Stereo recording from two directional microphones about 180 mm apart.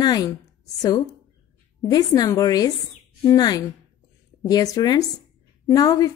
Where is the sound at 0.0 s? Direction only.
20° left (ahead or behind).